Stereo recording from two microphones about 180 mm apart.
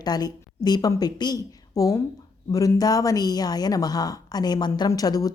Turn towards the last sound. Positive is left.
turn(degrees=20)  # may be behind; listen again after turning